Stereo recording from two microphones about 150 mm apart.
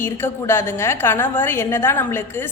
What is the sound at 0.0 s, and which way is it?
A woman's voice, 15° left (ahead or behind).